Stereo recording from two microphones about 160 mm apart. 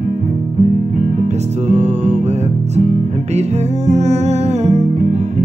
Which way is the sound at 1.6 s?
45° right (ahead or behind).